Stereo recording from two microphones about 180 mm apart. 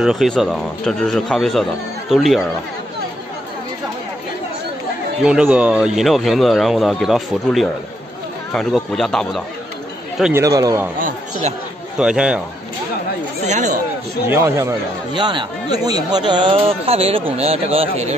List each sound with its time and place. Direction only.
0.0 s speech: centre (ahead or behind)
5.2 s speech: 5° right (ahead or behind)
10.3 s a man's voice: 20° right (ahead or behind)
11.0 s speech: 45° right (ahead or behind)
12.0 s speech: 5° right (ahead or behind)
13.5 s speech: 40° right (ahead or behind)
14.3 s a man's voice: 15° right (ahead or behind); by 18.1 s 35° right (ahead or behind)